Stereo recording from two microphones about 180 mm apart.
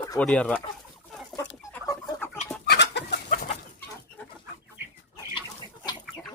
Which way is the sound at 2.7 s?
70° left (ahead or behind).